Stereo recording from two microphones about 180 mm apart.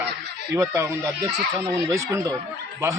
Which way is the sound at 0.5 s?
15° right (ahead or behind).